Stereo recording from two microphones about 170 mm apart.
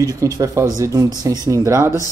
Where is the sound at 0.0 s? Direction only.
20° right (ahead or behind).